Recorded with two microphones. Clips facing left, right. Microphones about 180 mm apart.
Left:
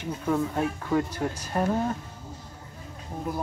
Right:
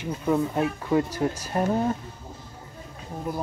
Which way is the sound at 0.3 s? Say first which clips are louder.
Right 2 dB; 15° right (ahead or behind).